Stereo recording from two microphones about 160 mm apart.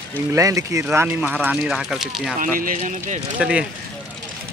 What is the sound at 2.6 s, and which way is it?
Speech, 55° right (ahead or behind).